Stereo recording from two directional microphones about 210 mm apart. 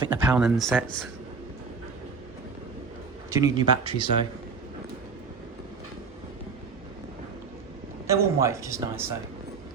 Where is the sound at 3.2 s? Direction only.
15° right (ahead or behind).